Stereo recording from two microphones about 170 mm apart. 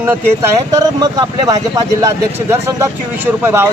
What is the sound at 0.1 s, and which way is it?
Speech, 20° right (ahead or behind).